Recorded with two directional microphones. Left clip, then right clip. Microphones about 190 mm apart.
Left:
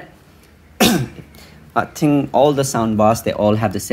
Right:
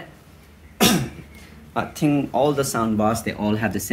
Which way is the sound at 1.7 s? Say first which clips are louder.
Left 5 dB; 25° left (ahead or behind).